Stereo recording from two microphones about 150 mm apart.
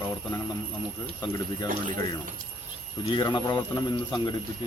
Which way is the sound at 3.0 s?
30° left (ahead or behind).